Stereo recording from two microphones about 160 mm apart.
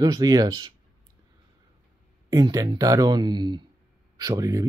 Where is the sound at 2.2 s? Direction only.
20° right (ahead or behind).